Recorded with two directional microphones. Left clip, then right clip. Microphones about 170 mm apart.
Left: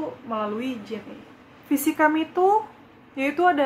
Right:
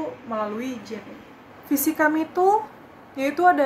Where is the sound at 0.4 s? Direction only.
20° left (ahead or behind).